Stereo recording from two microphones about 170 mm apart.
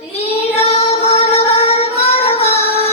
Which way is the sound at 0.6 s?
35° left (ahead or behind).